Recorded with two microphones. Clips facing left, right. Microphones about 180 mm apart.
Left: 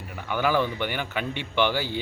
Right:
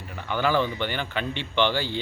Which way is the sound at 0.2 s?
10° left (ahead or behind).